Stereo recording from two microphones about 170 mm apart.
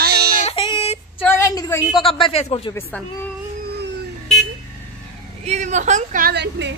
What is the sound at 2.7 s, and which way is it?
Speech, 10° left (ahead or behind).